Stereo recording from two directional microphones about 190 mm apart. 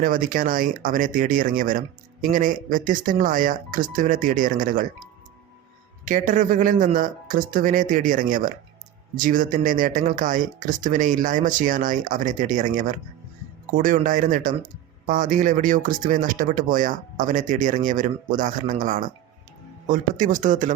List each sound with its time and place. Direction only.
0.0 s speech: 45° right (ahead or behind)
6.1 s speech: 45° right (ahead or behind)